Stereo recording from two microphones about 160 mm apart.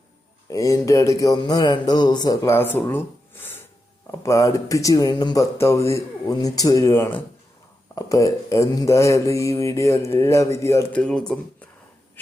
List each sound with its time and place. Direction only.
0.5 s speech: 20° left (ahead or behind)
11.0 s speech: 5° left (ahead or behind)